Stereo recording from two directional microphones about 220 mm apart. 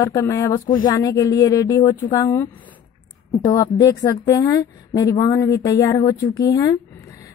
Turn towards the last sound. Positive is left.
turn(degrees=15)  # may be behind; listen again after turning